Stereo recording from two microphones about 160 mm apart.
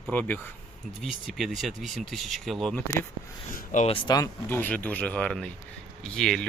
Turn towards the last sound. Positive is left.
turn(degrees=0)  # may be behind; listen again after turning